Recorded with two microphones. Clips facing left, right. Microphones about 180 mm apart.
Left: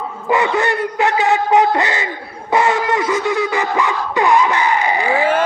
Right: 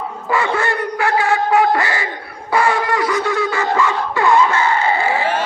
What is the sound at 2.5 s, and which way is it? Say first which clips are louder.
Wind instrument: left 1 dB; 20° left (ahead or behind).